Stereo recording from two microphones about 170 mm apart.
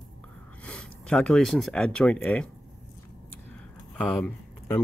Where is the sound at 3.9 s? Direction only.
5° left (ahead or behind).